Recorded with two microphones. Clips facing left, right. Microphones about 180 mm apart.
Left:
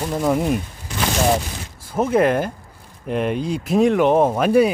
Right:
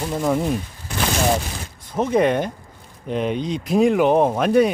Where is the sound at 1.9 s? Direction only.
5° left (ahead or behind).